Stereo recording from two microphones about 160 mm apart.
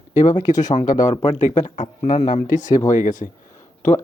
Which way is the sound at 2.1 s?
55° left (ahead or behind).